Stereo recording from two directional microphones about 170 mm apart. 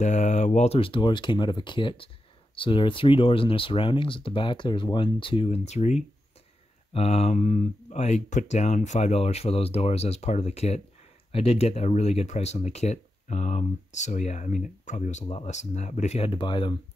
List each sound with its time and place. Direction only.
0.0 s speech: 45° left (ahead or behind)
16.3 s speech: 30° left (ahead or behind)